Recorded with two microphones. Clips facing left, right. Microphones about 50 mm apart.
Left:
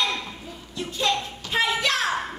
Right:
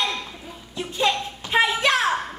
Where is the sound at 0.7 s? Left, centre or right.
Centre.